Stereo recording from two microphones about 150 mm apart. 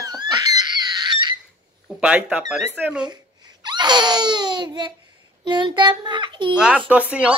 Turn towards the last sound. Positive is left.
turn(degrees=-10)  # may be behind; listen again after turning